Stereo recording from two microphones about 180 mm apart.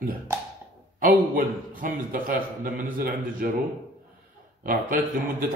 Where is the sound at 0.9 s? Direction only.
50° right (ahead or behind).